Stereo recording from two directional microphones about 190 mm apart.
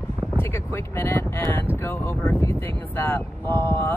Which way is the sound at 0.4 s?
15° left (ahead or behind).